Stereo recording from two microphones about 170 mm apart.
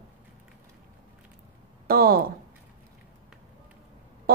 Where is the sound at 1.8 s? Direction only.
60° right (ahead or behind).